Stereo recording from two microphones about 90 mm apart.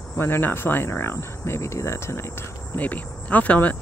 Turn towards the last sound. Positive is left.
turn(degrees=15)  # may be behind; listen again after turning